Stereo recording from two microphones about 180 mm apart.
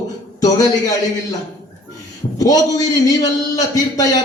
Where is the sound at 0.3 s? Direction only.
20° left (ahead or behind).